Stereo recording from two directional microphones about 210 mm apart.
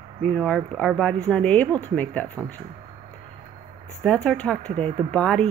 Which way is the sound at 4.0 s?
5° left (ahead or behind).